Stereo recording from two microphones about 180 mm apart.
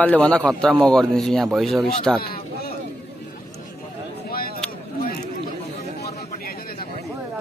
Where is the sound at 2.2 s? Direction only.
55° left (ahead or behind).